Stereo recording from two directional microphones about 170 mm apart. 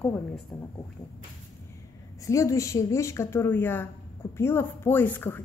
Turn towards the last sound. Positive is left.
turn(degrees=10)  # may be behind; listen again after turning